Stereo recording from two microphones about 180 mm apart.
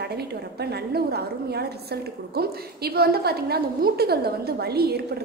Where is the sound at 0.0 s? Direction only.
65° right (ahead or behind).